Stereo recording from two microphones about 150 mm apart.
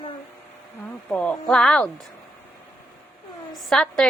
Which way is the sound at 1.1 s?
10° left (ahead or behind).